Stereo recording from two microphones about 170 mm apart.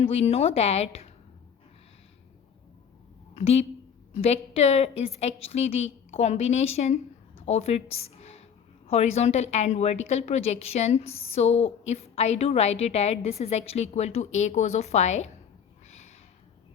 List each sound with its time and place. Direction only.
0.0 s a woman's voice: 35° left (ahead or behind)
3.3 s a woman's voice: 40° left (ahead or behind)
15.9 s a sound: 40° left (ahead or behind)